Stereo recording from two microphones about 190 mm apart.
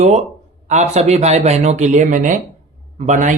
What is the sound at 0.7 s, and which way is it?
Speech, 35° right (ahead or behind).